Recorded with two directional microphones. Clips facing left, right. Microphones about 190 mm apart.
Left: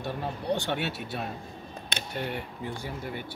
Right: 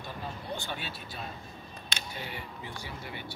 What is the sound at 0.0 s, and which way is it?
Speech, 75° left (ahead or behind).